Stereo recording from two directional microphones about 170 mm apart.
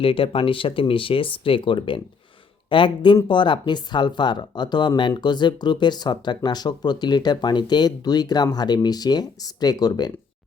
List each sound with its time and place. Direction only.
0.0 s speech: 30° left (ahead or behind)